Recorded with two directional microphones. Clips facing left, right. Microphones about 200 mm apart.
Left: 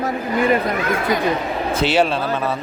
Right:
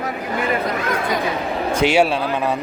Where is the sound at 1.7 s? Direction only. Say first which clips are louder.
Right 2 dB; 10° right (ahead or behind).